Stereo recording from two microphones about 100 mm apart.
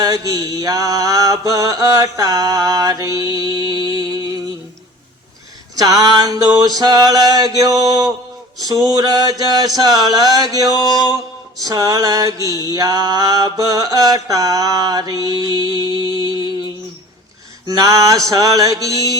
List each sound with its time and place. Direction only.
0.0 s mantra: 35° right (ahead or behind)
5.7 s mantra: 40° right (ahead or behind)
10.8 s music: 40° left (ahead or behind)
11.6 s mantra: 35° right (ahead or behind)
17.7 s mantra: 35° right (ahead or behind)